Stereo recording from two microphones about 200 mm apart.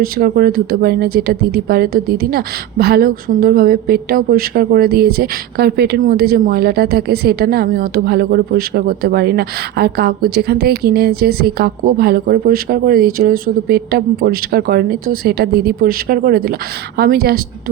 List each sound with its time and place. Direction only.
0.0 s speech: 50° right (ahead or behind)